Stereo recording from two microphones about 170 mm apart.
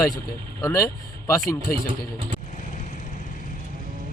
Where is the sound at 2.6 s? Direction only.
50° left (ahead or behind).